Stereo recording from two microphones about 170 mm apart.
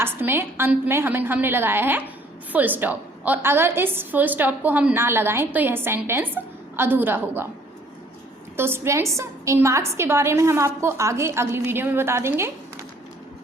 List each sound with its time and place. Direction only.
0.0 s a woman's voice: 15° right (ahead or behind)
8.5 s a woman's voice: 15° right (ahead or behind)